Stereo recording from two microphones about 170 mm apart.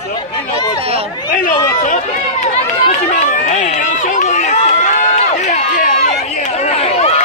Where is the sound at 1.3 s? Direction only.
50° left (ahead or behind).